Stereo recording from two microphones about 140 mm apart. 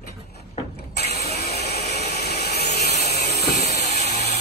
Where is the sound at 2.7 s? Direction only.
50° left (ahead or behind).